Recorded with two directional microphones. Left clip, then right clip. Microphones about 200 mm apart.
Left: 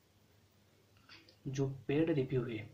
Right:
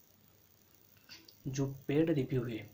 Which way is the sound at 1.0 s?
15° right (ahead or behind).